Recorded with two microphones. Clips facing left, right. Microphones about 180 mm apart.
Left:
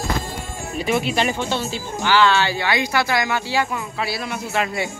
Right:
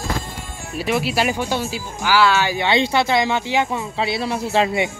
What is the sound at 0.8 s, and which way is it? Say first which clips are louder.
Speech: even; 5° right (ahead or behind).